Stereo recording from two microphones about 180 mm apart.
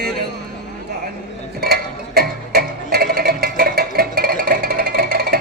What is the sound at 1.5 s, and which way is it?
Music, 60° right (ahead or behind).